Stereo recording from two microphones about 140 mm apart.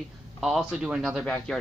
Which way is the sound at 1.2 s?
5° left (ahead or behind).